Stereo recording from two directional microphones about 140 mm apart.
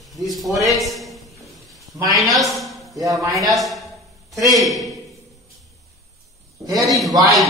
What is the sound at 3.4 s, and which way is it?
Speech, centre (ahead or behind).